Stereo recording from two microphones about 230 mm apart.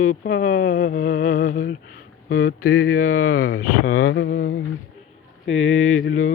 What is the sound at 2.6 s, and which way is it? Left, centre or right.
Mantra, left.